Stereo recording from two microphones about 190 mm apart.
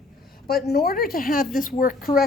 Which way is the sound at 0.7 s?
50° left (ahead or behind).